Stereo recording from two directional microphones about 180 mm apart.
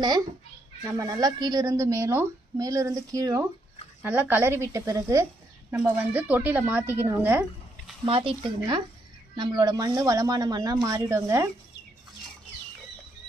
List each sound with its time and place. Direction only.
0.8 s a woman's voice: 20° right (ahead or behind)
4.0 s a woman's voice: 10° right (ahead or behind)
8.0 s a woman's voice: 30° right (ahead or behind)